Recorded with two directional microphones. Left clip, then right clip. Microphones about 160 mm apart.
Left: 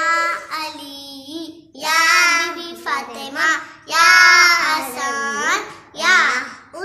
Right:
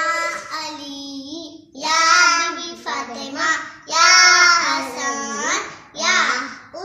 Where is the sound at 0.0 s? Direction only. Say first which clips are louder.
Left 3 dB; 15° left (ahead or behind).